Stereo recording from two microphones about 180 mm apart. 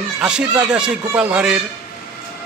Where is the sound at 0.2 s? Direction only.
5° right (ahead or behind).